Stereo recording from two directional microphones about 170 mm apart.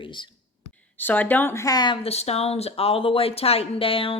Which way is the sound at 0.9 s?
10° left (ahead or behind).